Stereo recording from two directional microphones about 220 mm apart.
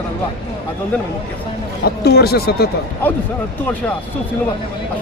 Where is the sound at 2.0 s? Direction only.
45° left (ahead or behind).